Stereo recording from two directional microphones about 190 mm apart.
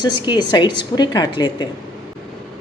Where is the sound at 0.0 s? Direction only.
25° left (ahead or behind).